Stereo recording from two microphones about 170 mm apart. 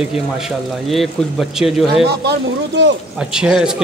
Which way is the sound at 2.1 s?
80° right.